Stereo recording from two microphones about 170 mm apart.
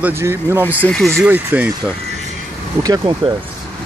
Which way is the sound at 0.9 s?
5° left (ahead or behind).